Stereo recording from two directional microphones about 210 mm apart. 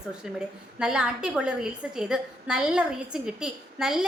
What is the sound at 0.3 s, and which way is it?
A woman's voice, 5° right (ahead or behind).